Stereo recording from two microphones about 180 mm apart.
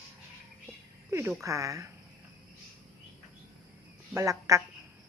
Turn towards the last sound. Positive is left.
turn(degrees=-15)  # may be behind; listen again after turning